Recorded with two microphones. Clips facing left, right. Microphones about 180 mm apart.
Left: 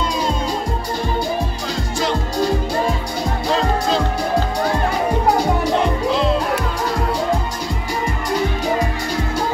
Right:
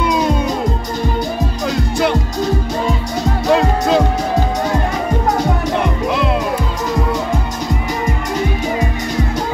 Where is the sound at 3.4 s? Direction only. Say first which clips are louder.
Right 5 dB; 60° right (ahead or behind).